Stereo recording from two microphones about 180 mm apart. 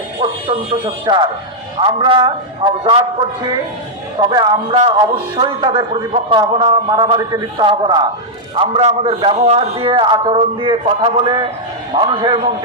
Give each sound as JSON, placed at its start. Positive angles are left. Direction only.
{"t": 1.0, "sound": "a man's voice", "side_deg": -25}
{"t": 4.2, "sound": "a man's voice", "side_deg": -25}